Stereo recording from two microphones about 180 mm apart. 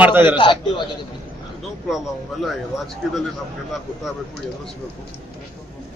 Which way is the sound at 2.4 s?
Centre (ahead or behind).